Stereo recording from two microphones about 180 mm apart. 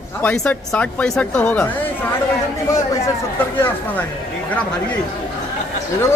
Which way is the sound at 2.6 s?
15° left (ahead or behind).